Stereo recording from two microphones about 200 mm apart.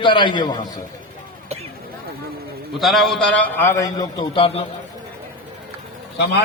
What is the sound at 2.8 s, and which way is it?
A man's voice, centre (ahead or behind).